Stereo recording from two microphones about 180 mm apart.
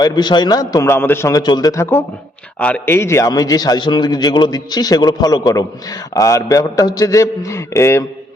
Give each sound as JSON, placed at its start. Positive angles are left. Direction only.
{"t": 0.0, "sound": "a man's voice", "side_deg": 25}